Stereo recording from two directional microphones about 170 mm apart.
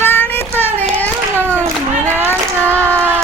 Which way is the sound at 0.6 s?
10° left (ahead or behind).